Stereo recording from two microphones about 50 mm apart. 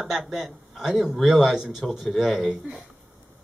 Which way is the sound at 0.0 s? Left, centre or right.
Centre.